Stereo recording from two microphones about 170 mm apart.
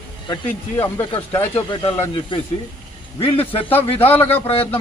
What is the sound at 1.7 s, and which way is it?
Speech, 25° left (ahead or behind).